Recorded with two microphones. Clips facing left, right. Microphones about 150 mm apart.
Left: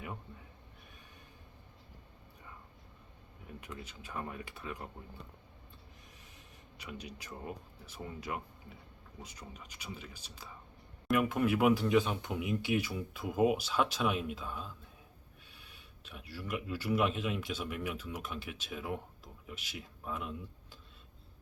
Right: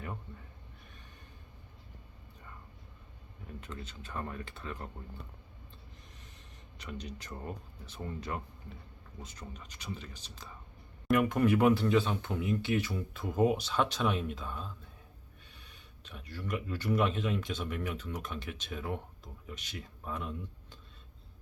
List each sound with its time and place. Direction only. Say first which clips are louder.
0.3 s a sound: right 2 dB; 10° left (ahead or behind)
3.6 s speech: right 1 dB; 10° left (ahead or behind)
6.7 s speech: right 3 dB; 10° left (ahead or behind)